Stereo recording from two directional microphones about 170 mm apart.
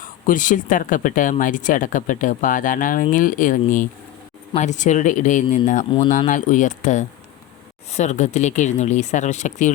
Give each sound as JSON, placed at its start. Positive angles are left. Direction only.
{"t": 0.0, "sound": "speech", "side_deg": 50}